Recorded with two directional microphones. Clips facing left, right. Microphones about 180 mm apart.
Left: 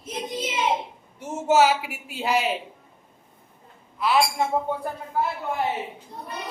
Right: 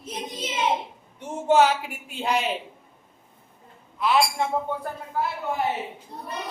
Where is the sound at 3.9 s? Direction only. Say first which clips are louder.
Even; centre (ahead or behind).